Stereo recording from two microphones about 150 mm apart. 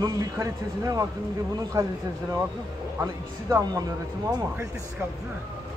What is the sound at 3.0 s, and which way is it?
Speech, 25° right (ahead or behind).